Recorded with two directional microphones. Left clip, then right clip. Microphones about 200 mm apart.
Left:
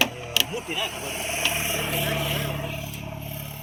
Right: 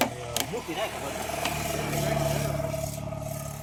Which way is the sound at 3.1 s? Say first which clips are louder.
Right 1 dB; 30° right (ahead or behind).